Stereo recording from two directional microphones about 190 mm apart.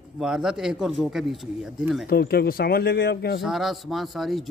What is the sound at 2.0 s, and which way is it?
Speech, 55° left (ahead or behind).